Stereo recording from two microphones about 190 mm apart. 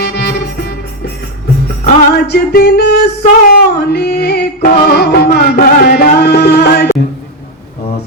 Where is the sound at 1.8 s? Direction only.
55° left (ahead or behind).